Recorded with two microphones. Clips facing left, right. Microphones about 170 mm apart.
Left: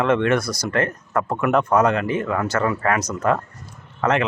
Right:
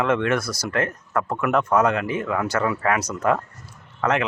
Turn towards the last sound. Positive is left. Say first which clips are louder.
# left 2 dB
turn(degrees=0)  # may be behind; listen again after turning